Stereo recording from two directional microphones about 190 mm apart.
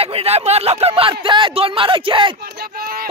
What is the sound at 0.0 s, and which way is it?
Speech, 30° right (ahead or behind).